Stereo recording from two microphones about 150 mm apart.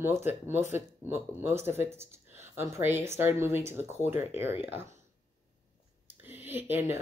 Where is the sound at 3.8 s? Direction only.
45° left (ahead or behind).